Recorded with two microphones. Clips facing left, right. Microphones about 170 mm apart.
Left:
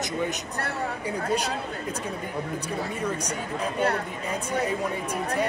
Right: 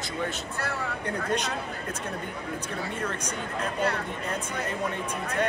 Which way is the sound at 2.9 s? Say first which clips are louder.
Left 3 dB; 10° left (ahead or behind).